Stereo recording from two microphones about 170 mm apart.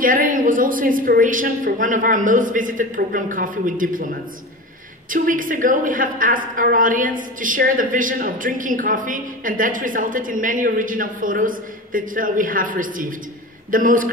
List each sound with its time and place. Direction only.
0.0 s a woman's voice: 55° right (ahead or behind)